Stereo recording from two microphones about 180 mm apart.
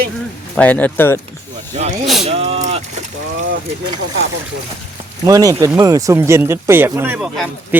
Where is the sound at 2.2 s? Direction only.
35° right (ahead or behind).